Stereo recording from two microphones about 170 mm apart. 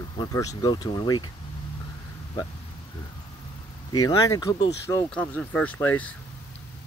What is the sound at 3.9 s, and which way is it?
Speech, 20° left (ahead or behind).